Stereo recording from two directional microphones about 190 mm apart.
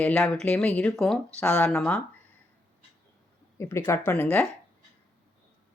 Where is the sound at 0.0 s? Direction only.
5° left (ahead or behind).